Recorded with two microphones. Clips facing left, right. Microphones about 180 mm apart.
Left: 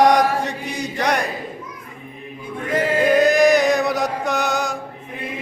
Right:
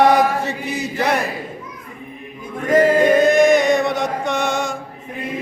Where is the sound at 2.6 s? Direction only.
45° right (ahead or behind).